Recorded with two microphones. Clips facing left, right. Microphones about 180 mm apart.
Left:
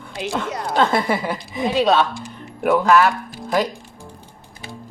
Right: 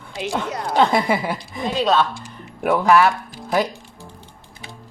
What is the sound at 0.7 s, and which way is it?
Speech, 15° right (ahead or behind).